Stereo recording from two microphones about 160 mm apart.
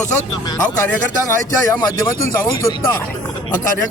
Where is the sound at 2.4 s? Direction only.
20° left (ahead or behind).